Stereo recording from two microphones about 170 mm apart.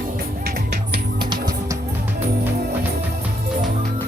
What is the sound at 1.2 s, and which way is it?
Music, 25° right (ahead or behind).